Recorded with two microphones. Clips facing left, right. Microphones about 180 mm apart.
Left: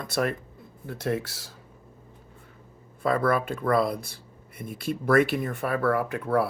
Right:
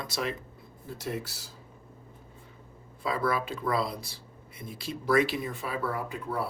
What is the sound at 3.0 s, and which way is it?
Speech, 55° left (ahead or behind).